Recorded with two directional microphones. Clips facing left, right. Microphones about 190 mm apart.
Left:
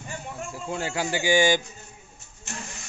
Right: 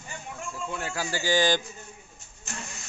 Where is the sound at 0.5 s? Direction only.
30° left (ahead or behind); by 1.6 s 10° left (ahead or behind).